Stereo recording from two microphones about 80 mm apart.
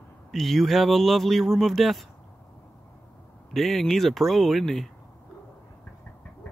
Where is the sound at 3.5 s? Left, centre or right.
Centre.